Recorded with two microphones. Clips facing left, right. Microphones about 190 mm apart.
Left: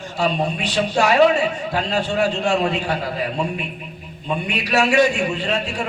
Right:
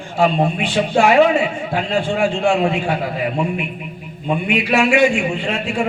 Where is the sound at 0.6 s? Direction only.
40° left (ahead or behind).